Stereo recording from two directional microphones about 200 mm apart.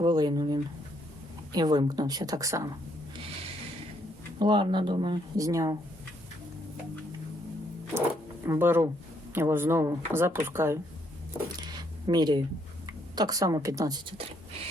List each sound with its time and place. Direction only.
0.0 s a sound: 20° right (ahead or behind)
1.5 s a woman's voice: 20° right (ahead or behind)
4.4 s a woman's voice: 25° right (ahead or behind)
8.4 s speech: 10° right (ahead or behind)
11.5 s a sound: 20° right (ahead or behind)
13.1 s a woman's voice: 20° right (ahead or behind)